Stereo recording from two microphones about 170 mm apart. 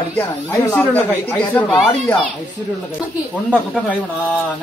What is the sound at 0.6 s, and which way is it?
A man's voice, 10° left (ahead or behind).